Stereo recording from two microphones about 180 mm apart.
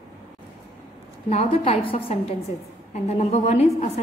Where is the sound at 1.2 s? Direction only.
35° left (ahead or behind).